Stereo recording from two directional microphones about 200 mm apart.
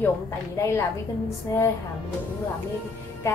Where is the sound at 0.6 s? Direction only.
15° left (ahead or behind).